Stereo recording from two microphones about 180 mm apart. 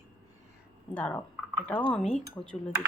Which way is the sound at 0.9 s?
10° left (ahead or behind).